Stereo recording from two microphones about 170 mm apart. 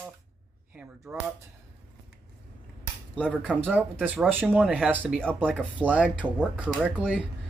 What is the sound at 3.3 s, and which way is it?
Speech, 10° right (ahead or behind).